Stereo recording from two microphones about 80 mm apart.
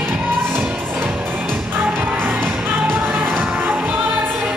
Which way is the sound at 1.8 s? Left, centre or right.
Right.